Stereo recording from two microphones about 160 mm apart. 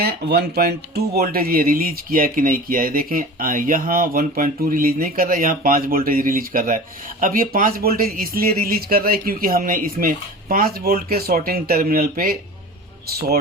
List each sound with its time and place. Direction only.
0.0 s speech: 85° right; by 12.4 s 65° right (ahead or behind)